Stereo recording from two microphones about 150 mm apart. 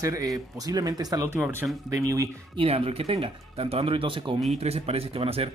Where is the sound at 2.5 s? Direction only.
40° right (ahead or behind).